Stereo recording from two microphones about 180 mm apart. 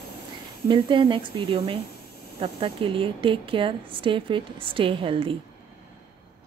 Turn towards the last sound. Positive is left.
turn(degrees=-30)  # may be behind; listen again after turning